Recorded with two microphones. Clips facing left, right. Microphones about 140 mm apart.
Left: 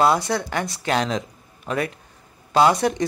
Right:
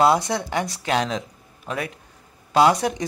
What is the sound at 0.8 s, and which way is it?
Speech, 5° right (ahead or behind).